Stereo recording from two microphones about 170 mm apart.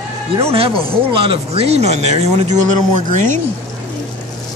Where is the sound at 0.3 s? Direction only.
35° right (ahead or behind).